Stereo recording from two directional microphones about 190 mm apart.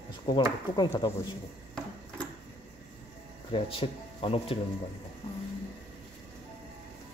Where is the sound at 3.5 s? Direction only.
30° left (ahead or behind).